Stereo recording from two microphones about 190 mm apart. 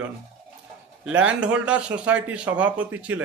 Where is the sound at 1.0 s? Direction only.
5° right (ahead or behind).